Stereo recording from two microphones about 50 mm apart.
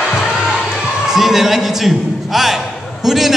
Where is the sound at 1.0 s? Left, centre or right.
Centre.